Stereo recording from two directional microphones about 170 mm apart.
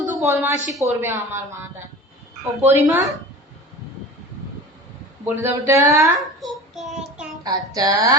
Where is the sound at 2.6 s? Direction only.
10° right (ahead or behind).